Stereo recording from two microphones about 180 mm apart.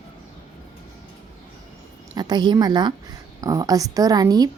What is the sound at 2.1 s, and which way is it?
A woman's voice, 25° right (ahead or behind).